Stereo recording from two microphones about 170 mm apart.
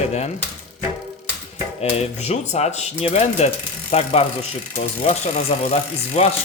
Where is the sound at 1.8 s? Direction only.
40° left (ahead or behind).